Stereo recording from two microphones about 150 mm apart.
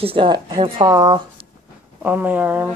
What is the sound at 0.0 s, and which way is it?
Speech, 35° right (ahead or behind).